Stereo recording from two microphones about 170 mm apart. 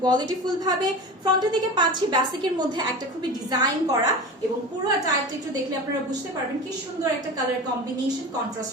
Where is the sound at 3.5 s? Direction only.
25° right (ahead or behind).